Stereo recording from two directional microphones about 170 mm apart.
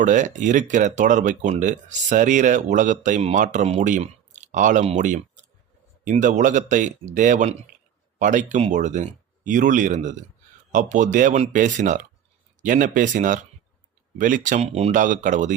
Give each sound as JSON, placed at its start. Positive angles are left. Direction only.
{"t": 0.0, "sound": "speech", "side_deg": -45}